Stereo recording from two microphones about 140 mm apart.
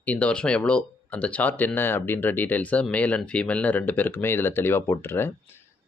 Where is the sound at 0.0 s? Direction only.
10° left (ahead or behind).